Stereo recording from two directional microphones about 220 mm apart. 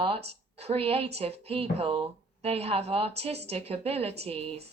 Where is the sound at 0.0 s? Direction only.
25° right (ahead or behind).